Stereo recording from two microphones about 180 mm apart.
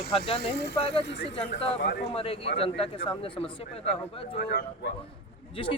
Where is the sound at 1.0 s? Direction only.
80° left.